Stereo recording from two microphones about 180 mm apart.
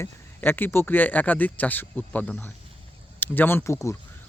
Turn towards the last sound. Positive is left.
turn(degrees=15)  # may be behind; listen again after turning